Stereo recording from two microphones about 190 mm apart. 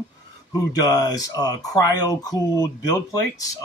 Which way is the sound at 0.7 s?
20° left (ahead or behind).